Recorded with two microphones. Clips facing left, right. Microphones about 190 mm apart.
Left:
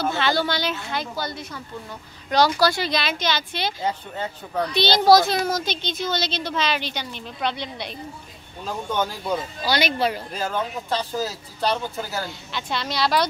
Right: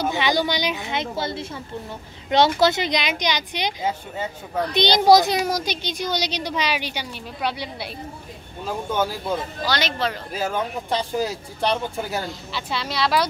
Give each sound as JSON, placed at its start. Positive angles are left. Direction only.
{"t": 0.0, "sound": "a woman's voice", "side_deg": -15}
{"t": 9.7, "sound": "speech", "side_deg": 10}
{"t": 10.3, "sound": "a woman's voice", "side_deg": -10}
{"t": 12.3, "sound": "speech", "side_deg": -5}